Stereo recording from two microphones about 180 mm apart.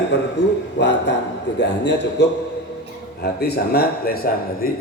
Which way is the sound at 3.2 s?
60° left (ahead or behind).